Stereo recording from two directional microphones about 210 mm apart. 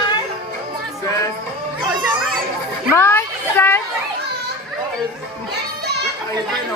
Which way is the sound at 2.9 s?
10° left (ahead or behind).